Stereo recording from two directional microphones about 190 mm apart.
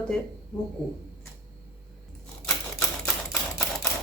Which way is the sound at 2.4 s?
5° left (ahead or behind).